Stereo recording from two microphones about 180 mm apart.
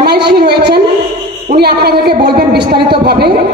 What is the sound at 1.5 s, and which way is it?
A woman's voice, 60° right (ahead or behind).